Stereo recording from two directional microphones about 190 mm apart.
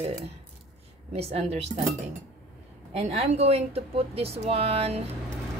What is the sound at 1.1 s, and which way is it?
Speech, 35° right (ahead or behind).